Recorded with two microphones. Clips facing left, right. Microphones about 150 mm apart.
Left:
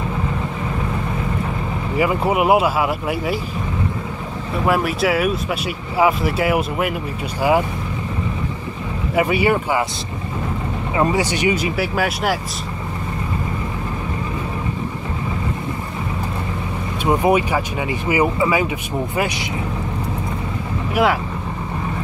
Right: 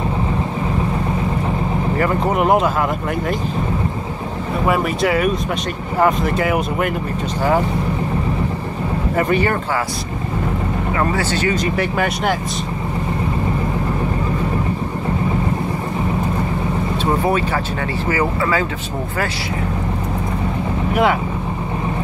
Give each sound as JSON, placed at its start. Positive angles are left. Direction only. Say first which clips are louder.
{"t": 2.0, "sound": "speech", "louder": "left 2 dB", "side_deg": 10}
{"t": 4.6, "sound": "speech", "louder": "even", "side_deg": 0}
{"t": 9.1, "sound": "speech", "louder": "left 2 dB", "side_deg": 10}
{"t": 11.0, "sound": "speech", "louder": "left 3 dB", "side_deg": 15}
{"t": 17.0, "sound": "speech", "louder": "left 3 dB", "side_deg": 15}
{"t": 20.9, "sound": "speech", "louder": "right 1 dB", "side_deg": 0}